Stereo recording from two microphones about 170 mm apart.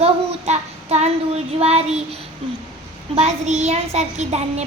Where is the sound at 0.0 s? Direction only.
40° right (ahead or behind).